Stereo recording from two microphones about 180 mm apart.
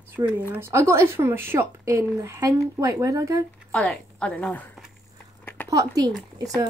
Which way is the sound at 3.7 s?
5° left (ahead or behind).